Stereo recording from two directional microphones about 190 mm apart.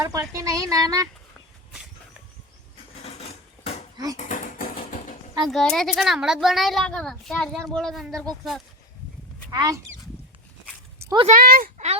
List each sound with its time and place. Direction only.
0.0 s speech: 15° right (ahead or behind)
3.0 s dishes: 30° left (ahead or behind)
3.9 s speech: 20° right (ahead or behind)
4.2 s a sound: 45° left (ahead or behind)
5.4 s a child's voice: centre (ahead or behind)
9.5 s speech: 20° right (ahead or behind)
11.0 s a sound: 20° right (ahead or behind)
11.3 s speech: 50° right (ahead or behind)